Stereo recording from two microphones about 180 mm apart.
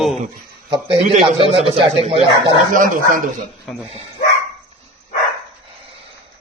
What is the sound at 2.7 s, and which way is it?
Speech, 45° right (ahead or behind).